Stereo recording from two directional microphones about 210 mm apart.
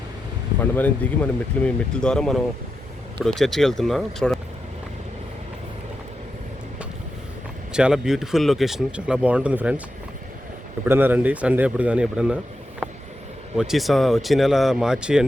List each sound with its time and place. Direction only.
0.6 s speech: 5° left (ahead or behind)
7.7 s speech: 5° right (ahead or behind)
10.8 s a man's voice: 10° right (ahead or behind)
13.6 s speech: centre (ahead or behind)